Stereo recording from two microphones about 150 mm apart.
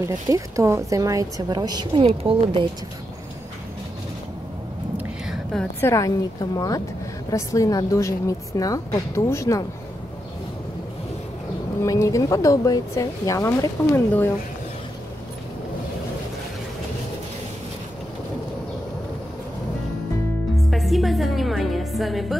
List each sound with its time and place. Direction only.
0.0 s a woman's voice: 20° right (ahead or behind); by 2.6 s 40° right (ahead or behind)
4.9 s a sound: centre (ahead or behind)
5.8 s a woman's voice: 20° left (ahead or behind)
11.8 s a woman's voice: 20° left (ahead or behind)
20.7 s music: centre (ahead or behind)